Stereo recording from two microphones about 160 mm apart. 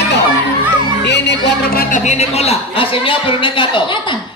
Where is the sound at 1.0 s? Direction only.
90° left; by 2.0 s 70° left (ahead or behind).